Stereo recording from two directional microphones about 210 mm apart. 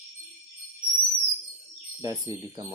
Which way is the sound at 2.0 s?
15° right (ahead or behind).